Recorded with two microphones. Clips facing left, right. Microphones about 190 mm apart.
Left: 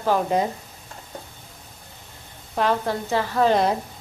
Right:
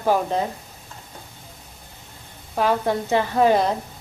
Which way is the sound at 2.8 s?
20° right (ahead or behind).